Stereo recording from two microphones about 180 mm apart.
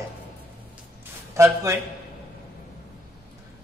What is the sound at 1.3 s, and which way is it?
Speech, 15° right (ahead or behind).